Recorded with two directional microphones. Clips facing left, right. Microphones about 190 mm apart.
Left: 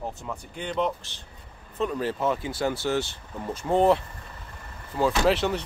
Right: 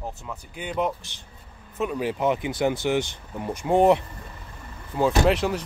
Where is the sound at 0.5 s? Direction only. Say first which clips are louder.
Right 1 dB; 10° right (ahead or behind).